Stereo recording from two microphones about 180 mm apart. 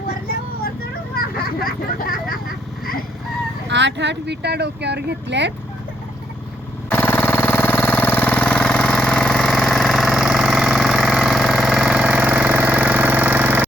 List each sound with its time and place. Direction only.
1.5 s speech: 55° left (ahead or behind)
3.7 s speech: 75° right (ahead or behind)
6.9 s engine: 10° left (ahead or behind); by 13.7 s 10° right (ahead or behind)